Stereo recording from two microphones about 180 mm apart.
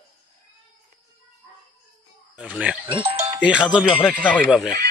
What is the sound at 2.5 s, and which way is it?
Speech, 5° right (ahead or behind).